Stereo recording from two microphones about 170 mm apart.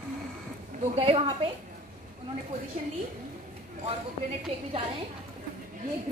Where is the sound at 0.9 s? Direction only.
35° right (ahead or behind).